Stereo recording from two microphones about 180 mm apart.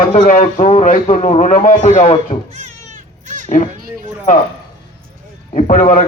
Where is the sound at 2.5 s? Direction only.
40° right (ahead or behind).